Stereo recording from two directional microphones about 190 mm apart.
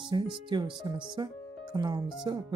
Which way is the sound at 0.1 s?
25° right (ahead or behind).